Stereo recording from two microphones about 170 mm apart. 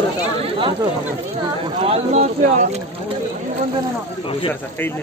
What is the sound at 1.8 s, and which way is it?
Speech, 40° right (ahead or behind).